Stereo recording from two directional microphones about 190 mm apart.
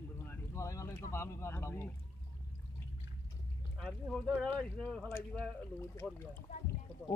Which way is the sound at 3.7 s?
Centre (ahead or behind).